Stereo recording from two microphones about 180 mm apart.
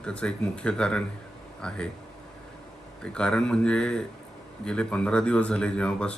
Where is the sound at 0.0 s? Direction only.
5° left (ahead or behind).